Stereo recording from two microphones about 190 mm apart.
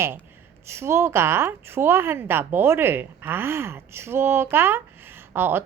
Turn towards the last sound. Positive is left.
turn(degrees=-10)  # may be behind; listen again after turning